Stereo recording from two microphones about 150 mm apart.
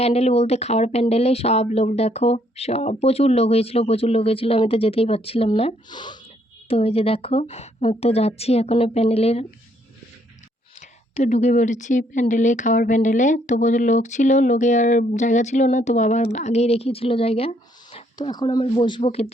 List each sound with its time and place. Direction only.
0.0 s speech: 45° left (ahead or behind)
6.7 s speech: 40° left (ahead or behind)
10.8 s a woman's voice: 50° left (ahead or behind)
18.2 s speech: 25° left (ahead or behind)